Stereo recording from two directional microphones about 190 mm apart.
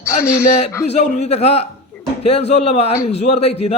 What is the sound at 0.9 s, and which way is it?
A man's voice, 35° left (ahead or behind).